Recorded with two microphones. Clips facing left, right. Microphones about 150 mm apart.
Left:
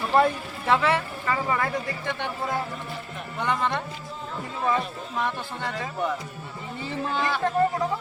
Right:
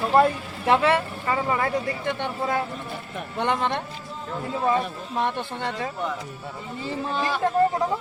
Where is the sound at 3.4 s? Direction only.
20° right (ahead or behind).